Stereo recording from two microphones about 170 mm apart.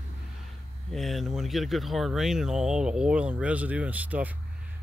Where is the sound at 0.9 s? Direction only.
Centre (ahead or behind).